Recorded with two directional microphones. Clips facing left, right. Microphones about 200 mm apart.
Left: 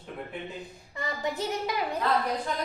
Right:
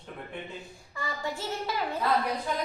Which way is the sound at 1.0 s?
20° left (ahead or behind).